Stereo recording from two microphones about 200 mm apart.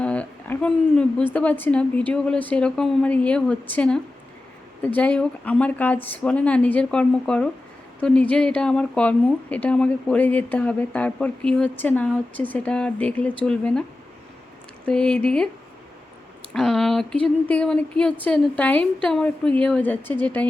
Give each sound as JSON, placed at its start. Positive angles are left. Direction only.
{"t": 0.0, "sound": "a woman's voice", "side_deg": 5}
{"t": 14.8, "sound": "a woman's voice", "side_deg": 5}
{"t": 16.5, "sound": "a woman's voice", "side_deg": 0}